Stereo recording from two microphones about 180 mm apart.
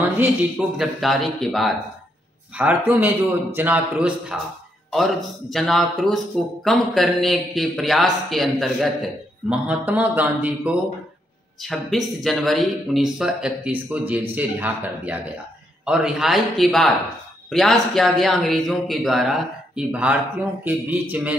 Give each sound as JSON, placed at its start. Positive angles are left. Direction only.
{"t": 0.0, "sound": "speech", "side_deg": -10}